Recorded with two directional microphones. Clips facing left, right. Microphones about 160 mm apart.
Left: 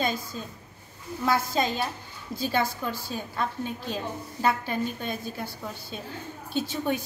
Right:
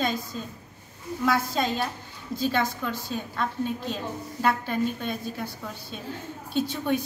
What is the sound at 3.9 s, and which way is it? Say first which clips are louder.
A woman's voice: even; 5° left (ahead or behind).